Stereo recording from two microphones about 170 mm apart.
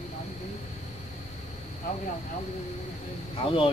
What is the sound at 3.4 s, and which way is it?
Speech, 30° left (ahead or behind).